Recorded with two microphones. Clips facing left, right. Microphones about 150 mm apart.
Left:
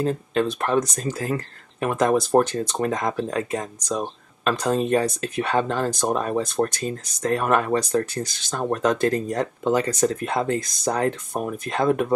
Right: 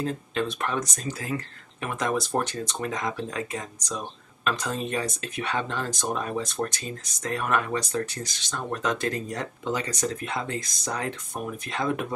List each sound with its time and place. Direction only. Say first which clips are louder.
0.0 s speech: left 6 dB; 45° left (ahead or behind)